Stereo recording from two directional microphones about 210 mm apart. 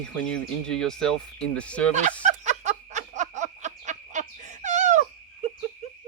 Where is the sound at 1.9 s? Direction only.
35° right (ahead or behind).